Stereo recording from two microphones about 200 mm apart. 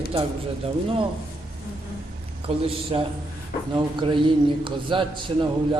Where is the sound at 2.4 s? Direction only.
25° right (ahead or behind).